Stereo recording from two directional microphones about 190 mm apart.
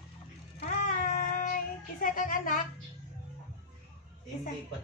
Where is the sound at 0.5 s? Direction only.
40° left (ahead or behind).